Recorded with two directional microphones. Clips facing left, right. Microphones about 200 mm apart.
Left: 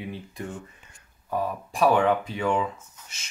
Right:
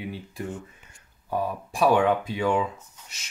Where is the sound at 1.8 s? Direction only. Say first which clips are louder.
Even; 5° right (ahead or behind).